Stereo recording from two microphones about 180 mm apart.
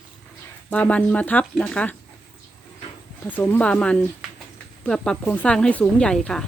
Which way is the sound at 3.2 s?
10° left (ahead or behind).